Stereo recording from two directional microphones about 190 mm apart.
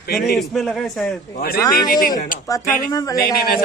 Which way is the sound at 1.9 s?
50° left (ahead or behind).